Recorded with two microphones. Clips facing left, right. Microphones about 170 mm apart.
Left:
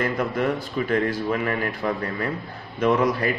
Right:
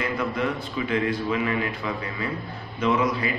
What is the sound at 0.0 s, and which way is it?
A man's voice, 50° left (ahead or behind).